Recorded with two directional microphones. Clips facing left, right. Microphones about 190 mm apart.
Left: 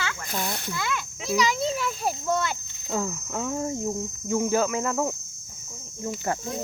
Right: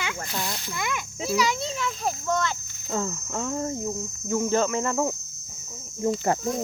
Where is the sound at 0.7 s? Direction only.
15° right (ahead or behind).